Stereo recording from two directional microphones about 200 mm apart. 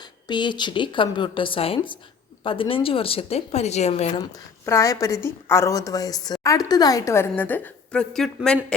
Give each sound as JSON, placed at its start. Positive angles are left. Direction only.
{"t": 0.3, "sound": "speech", "side_deg": 20}
{"t": 4.2, "sound": "a woman's voice", "side_deg": 15}